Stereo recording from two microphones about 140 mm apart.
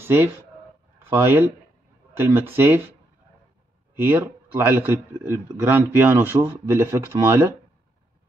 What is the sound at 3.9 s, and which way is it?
A man's voice, 15° right (ahead or behind).